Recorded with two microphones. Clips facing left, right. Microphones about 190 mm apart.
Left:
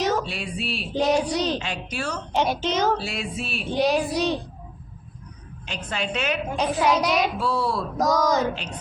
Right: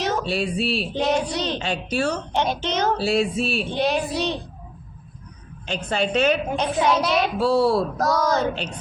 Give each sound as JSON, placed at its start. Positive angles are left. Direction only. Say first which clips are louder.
{"t": 0.3, "sound": "a woman's voice", "louder": "right 7 dB", "side_deg": -35}
{"t": 0.9, "sound": "child singing", "louder": "left 3 dB", "side_deg": 10}
{"t": 1.5, "sound": "a woman's voice", "louder": "right 5 dB", "side_deg": -30}
{"t": 2.3, "sound": "child singing", "louder": "even", "side_deg": 5}
{"t": 3.0, "sound": "a woman's voice", "louder": "right 9 dB", "side_deg": -30}
{"t": 3.7, "sound": "child singing", "louder": "left 1 dB", "side_deg": 10}
{"t": 5.6, "sound": "a woman's voice", "louder": "right 6 dB", "side_deg": -30}
{"t": 6.6, "sound": "child singing", "louder": "right 1 dB", "side_deg": 10}
{"t": 7.3, "sound": "a woman's voice", "louder": "right 7 dB", "side_deg": -30}
{"t": 7.9, "sound": "child singing", "louder": "even", "side_deg": 15}